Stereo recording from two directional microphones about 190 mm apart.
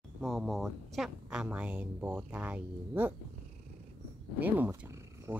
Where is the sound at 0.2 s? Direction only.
Centre (ahead or behind).